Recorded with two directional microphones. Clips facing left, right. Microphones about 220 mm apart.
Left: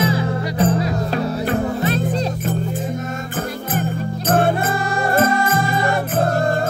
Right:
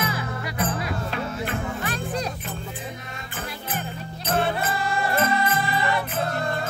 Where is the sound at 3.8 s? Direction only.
50° left (ahead or behind).